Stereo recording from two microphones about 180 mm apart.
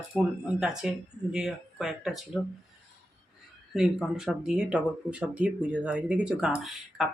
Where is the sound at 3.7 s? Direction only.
Centre (ahead or behind).